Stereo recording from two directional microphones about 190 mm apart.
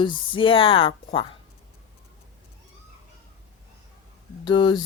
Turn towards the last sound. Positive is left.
turn(degrees=25)  # may be behind; listen again after turning